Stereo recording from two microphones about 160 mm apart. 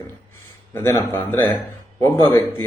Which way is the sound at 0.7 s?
15° left (ahead or behind).